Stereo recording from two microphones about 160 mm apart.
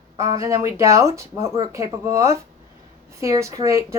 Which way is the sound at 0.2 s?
20° right (ahead or behind).